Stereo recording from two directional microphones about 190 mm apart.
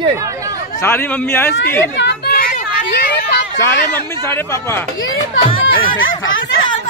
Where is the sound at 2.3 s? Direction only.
50° left (ahead or behind).